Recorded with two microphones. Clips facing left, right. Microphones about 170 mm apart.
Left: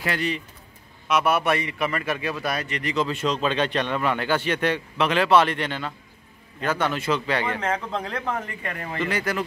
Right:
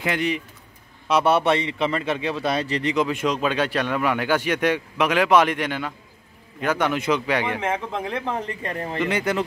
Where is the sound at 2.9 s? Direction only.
15° right (ahead or behind).